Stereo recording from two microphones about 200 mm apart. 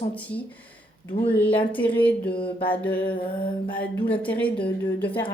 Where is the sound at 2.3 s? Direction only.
25° left (ahead or behind).